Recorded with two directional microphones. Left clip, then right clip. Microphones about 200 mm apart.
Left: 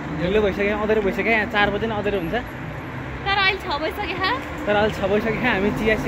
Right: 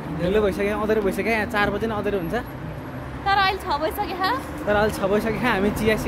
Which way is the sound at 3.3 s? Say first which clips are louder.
Even; 25° right (ahead or behind).